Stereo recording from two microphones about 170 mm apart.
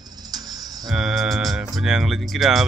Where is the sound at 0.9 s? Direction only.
Centre (ahead or behind).